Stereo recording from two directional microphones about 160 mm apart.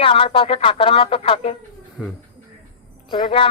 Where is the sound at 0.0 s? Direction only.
35° left (ahead or behind).